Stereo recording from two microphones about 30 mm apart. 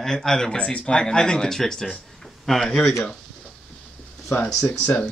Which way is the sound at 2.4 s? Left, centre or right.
Centre.